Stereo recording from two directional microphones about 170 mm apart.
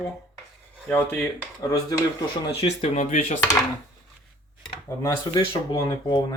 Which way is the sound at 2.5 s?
35° left (ahead or behind).